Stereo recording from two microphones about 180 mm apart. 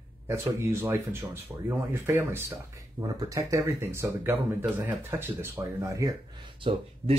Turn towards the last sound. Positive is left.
turn(degrees=-30)  # may be behind; listen again after turning